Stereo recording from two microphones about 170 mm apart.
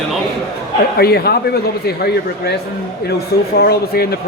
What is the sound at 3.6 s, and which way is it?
Speech, 65° left (ahead or behind).